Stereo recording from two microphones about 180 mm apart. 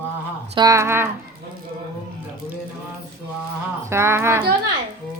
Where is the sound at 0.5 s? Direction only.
20° right (ahead or behind).